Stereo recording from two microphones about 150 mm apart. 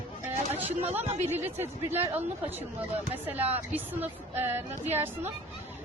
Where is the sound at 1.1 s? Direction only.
50° right (ahead or behind).